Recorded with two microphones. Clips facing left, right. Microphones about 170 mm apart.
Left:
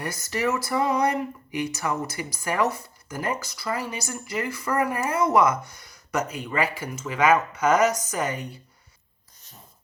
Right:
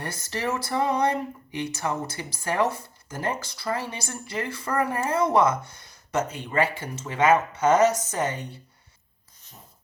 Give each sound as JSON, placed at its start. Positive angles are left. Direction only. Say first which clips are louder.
{"t": 0.0, "sound": "speech", "louder": "left 3 dB", "side_deg": -30}